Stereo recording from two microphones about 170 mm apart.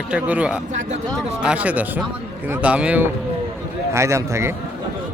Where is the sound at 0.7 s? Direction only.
45° right (ahead or behind).